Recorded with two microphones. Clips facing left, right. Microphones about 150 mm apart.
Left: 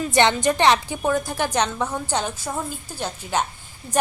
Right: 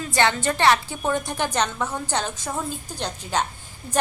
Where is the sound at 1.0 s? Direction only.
5° left (ahead or behind).